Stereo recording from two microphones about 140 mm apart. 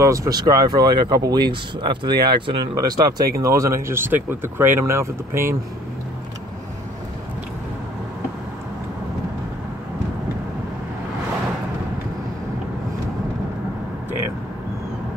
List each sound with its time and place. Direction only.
0.0 s speech: 25° right (ahead or behind)